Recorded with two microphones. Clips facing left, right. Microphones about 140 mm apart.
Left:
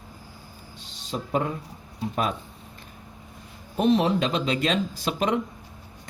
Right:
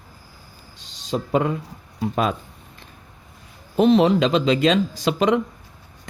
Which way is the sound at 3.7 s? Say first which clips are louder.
Right 6 dB; 90° right.